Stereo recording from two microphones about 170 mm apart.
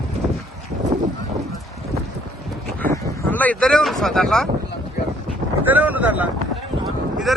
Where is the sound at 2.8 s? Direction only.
15° left (ahead or behind).